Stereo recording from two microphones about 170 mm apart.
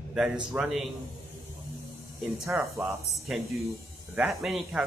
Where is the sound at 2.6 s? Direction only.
Centre (ahead or behind).